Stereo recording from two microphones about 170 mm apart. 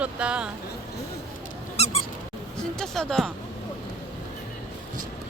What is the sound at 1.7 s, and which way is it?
Squeak, 35° left (ahead or behind).